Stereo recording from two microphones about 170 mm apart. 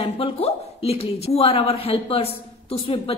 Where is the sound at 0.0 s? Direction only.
35° left (ahead or behind).